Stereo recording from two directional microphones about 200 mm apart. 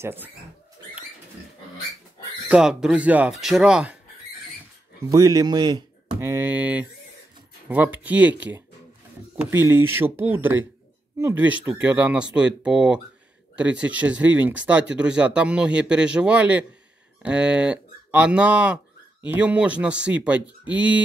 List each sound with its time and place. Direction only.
0.0 s speech: 10° right (ahead or behind)
2.4 s speech: 5° right (ahead or behind)
5.0 s speech: 20° right (ahead or behind)